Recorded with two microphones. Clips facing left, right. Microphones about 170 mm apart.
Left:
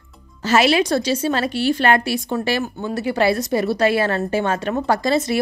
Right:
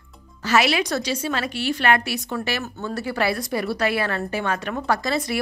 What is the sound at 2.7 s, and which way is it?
Speech, 15° left (ahead or behind).